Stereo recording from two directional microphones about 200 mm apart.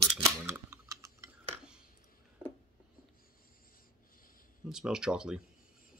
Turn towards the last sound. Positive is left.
turn(degrees=-5)  # may be behind; listen again after turning